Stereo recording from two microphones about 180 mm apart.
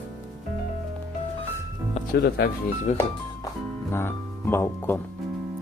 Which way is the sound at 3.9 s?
15° left (ahead or behind).